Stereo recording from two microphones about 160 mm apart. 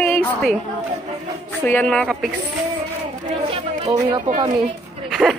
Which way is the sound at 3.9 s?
20° right (ahead or behind).